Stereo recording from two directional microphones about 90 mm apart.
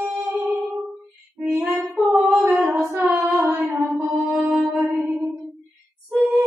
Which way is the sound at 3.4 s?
20° right (ahead or behind).